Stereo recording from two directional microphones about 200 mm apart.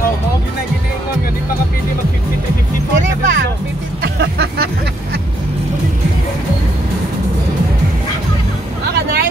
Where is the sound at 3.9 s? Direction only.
55° right (ahead or behind).